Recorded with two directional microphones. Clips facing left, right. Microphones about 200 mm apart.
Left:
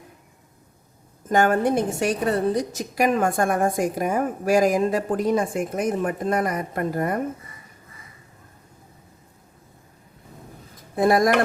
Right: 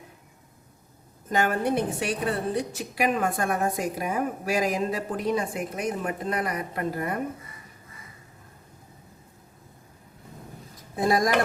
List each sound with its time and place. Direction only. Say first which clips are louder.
1.3 s a woman's voice: left 5 dB; 50° left (ahead or behind)
10.9 s speech: left 5 dB; 55° left (ahead or behind)